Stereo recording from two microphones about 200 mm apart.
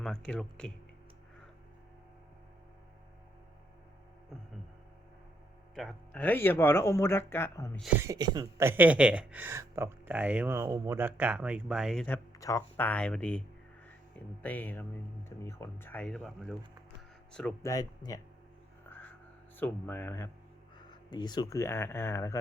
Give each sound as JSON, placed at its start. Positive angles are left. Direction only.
{"t": 0.0, "sound": "speech", "side_deg": 5}
{"t": 5.7, "sound": "speech", "side_deg": 0}
{"t": 7.8, "sound": "speech", "side_deg": -10}
{"t": 14.4, "sound": "speech", "side_deg": 10}
{"t": 18.9, "sound": "a sound", "side_deg": 10}
{"t": 19.5, "sound": "speech", "side_deg": 10}